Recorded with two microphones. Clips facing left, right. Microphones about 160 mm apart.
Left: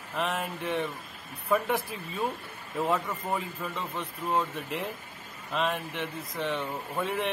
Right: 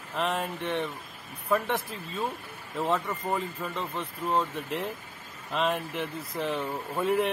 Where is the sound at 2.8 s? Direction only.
Centre (ahead or behind).